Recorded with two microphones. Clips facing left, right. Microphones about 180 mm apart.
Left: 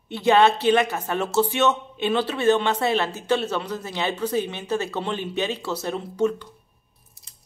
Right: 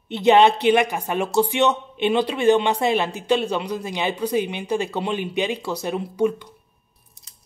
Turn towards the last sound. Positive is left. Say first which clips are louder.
# right 2 dB
turn(degrees=-15)  # may be behind; listen again after turning